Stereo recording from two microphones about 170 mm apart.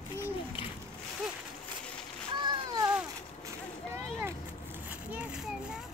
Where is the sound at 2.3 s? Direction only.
25° right (ahead or behind).